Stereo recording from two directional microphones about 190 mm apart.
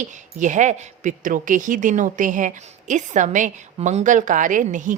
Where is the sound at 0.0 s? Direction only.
40° right (ahead or behind).